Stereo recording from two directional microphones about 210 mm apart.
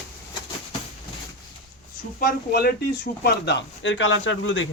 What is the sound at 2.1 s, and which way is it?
Speech, 45° left (ahead or behind).